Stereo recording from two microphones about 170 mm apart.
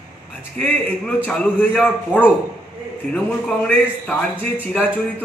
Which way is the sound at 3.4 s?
5° left (ahead or behind).